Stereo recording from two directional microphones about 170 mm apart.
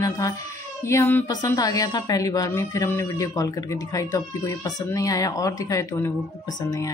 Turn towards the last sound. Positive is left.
turn(degrees=15)  # may be behind; listen again after turning